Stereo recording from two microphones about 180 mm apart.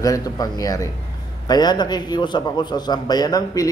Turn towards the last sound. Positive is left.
turn(degrees=20)  # may be behind; listen again after turning